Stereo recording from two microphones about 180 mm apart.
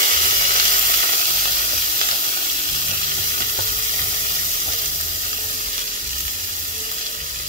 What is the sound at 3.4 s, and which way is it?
Sizzle, 50° right (ahead or behind).